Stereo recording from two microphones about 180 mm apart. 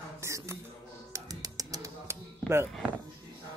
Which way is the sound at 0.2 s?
15° right (ahead or behind).